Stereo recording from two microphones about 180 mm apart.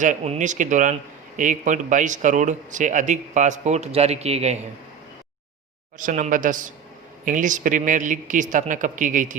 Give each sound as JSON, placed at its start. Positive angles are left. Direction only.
{"t": 0.0, "sound": "speech", "side_deg": -45}
{"t": 6.0, "sound": "speech", "side_deg": -45}